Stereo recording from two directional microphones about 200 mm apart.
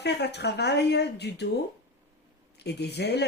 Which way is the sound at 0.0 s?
55° left (ahead or behind).